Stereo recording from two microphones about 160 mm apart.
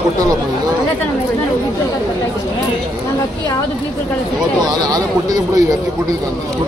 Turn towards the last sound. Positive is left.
turn(degrees=-25)  # may be behind; listen again after turning